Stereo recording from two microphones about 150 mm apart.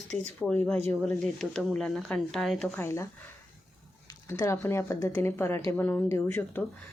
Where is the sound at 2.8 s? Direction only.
20° left (ahead or behind).